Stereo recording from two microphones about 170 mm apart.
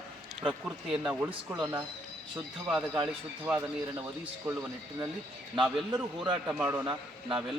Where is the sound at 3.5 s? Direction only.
10° right (ahead or behind).